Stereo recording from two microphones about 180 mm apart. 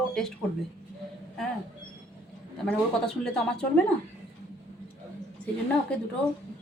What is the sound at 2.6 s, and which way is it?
A woman's voice, 5° left (ahead or behind).